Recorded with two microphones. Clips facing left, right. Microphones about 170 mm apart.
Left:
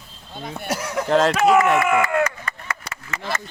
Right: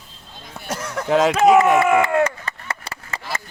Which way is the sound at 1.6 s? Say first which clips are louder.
Right 3 dB; 20° right (ahead or behind).